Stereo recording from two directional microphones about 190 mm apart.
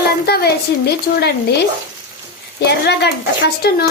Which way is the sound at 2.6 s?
60° left (ahead or behind).